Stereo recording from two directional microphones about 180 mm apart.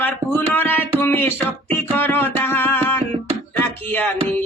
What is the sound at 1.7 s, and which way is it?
Music, 10° left (ahead or behind).